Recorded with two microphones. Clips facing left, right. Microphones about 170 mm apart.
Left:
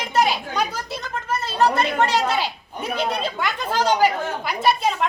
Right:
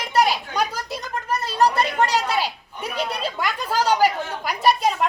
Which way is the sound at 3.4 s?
10° right (ahead or behind).